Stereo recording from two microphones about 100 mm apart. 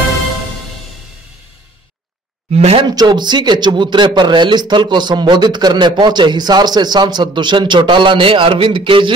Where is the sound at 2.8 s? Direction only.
45° right (ahead or behind).